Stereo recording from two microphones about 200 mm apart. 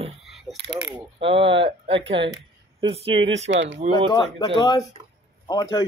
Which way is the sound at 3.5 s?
65° right (ahead or behind).